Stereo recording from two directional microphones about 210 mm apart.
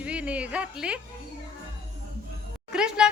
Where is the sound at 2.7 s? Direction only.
5° right (ahead or behind).